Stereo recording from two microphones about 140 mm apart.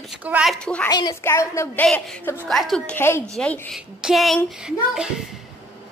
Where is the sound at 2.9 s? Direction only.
15° left (ahead or behind).